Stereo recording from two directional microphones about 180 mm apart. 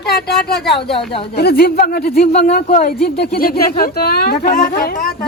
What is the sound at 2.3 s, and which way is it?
Speech, 40° left (ahead or behind).